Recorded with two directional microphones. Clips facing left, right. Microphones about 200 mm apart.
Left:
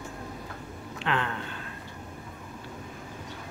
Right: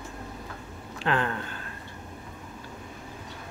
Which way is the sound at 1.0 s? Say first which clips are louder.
Right 3 dB; 40° right (ahead or behind).